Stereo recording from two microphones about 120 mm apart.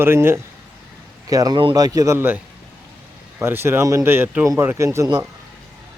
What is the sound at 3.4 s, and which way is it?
Speech, 20° right (ahead or behind).